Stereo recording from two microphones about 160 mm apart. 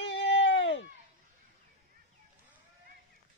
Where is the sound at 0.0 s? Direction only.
90° left.